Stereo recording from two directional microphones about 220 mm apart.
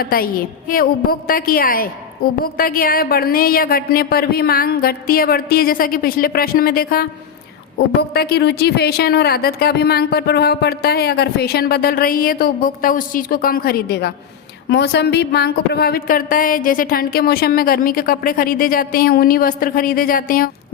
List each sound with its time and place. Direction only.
0.0 s a woman's voice: 40° left (ahead or behind)
8.1 s a woman's voice: 45° left (ahead or behind)